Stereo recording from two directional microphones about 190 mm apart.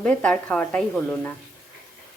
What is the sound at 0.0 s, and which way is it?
Speech, 5° left (ahead or behind).